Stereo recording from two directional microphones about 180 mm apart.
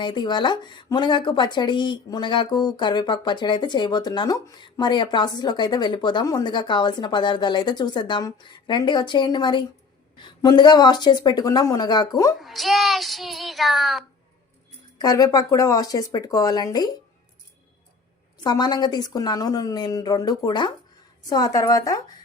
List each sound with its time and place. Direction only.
0.0 s speech: 25° left (ahead or behind)
12.4 s child singing: centre (ahead or behind)
14.9 s speech: 20° left (ahead or behind)
18.3 s speech: 25° left (ahead or behind)